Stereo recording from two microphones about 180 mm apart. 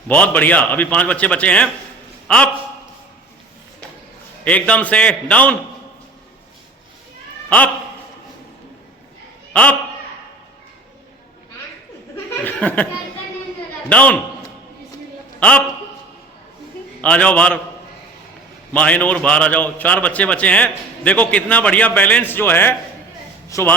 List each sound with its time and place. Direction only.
0.1 s a man's voice: 10° left (ahead or behind)
4.4 s a man's voice: 10° left (ahead or behind)
9.5 s a man's voice: 5° left (ahead or behind)
12.1 s speech: 10° left (ahead or behind)
13.9 s a man's voice: 10° left (ahead or behind)
15.4 s a man's voice: 5° left (ahead or behind)
17.0 s a man's voice: 5° left (ahead or behind)
18.7 s a man's voice: 10° left (ahead or behind)